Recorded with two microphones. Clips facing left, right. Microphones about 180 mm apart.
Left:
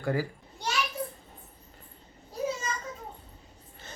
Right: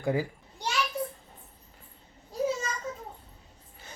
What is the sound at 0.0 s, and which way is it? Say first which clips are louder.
Speech: right 1 dB; 15° right (ahead or behind).